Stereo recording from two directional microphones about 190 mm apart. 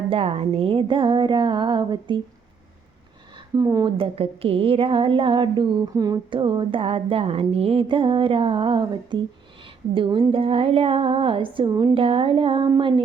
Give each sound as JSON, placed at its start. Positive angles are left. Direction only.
{"t": 0.1, "sound": "speech", "side_deg": -30}
{"t": 3.3, "sound": "speech", "side_deg": -15}
{"t": 3.9, "sound": "speech", "side_deg": -30}